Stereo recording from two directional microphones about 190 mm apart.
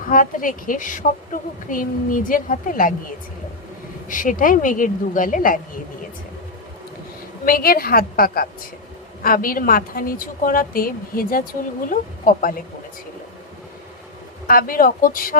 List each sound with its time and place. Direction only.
0.1 s a woman's voice: 45° left (ahead or behind)
4.1 s a woman's voice: 45° left (ahead or behind)
7.4 s a woman's voice: 50° left (ahead or behind)
14.4 s a woman's voice: 50° left (ahead or behind)